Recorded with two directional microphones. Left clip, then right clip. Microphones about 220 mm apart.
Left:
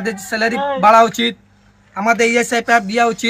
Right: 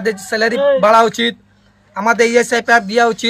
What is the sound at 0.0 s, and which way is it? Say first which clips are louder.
Speech: right 3 dB; centre (ahead or behind).